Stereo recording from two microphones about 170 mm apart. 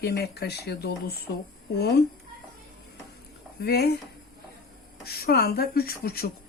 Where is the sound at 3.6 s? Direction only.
70° left (ahead or behind).